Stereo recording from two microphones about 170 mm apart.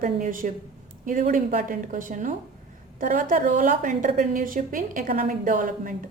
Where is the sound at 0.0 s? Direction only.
55° right (ahead or behind).